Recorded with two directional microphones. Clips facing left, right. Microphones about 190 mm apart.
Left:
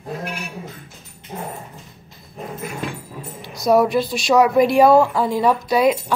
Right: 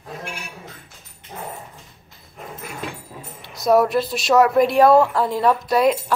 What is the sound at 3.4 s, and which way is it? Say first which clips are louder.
Speech: left 1 dB; centre (ahead or behind).